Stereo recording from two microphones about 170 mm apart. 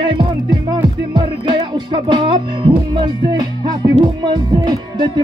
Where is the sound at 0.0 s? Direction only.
30° right (ahead or behind).